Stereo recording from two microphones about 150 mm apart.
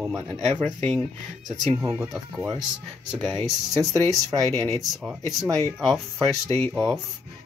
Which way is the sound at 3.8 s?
25° right (ahead or behind).